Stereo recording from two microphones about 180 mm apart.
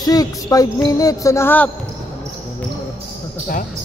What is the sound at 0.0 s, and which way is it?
Music, 20° left (ahead or behind).